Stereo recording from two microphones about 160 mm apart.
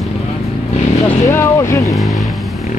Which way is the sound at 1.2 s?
15° left (ahead or behind).